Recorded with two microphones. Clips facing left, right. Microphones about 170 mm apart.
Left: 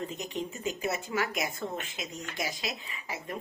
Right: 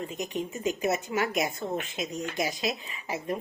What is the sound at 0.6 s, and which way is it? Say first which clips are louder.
A woman's voice: right 7 dB; 20° right (ahead or behind).